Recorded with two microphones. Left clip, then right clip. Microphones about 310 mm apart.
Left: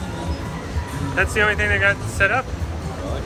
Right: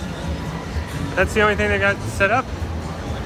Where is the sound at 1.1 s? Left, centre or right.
Centre.